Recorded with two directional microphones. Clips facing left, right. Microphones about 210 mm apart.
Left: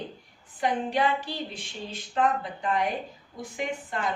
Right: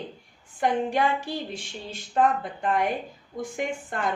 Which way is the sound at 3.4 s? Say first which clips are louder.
Right 3 dB; 50° right (ahead or behind).